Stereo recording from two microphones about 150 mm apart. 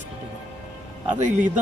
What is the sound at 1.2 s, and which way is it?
Speech, 55° right (ahead or behind).